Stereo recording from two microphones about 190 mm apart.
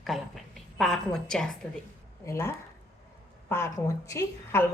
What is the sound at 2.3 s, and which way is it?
Speech, 15° left (ahead or behind).